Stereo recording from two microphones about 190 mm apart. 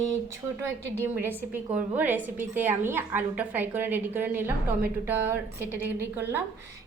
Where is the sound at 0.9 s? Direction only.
10° right (ahead or behind).